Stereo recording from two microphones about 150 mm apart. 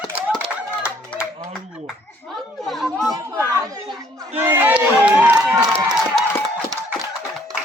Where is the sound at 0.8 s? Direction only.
15° left (ahead or behind).